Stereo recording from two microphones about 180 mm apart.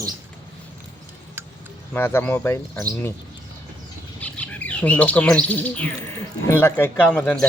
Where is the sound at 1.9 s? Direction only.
15° left (ahead or behind).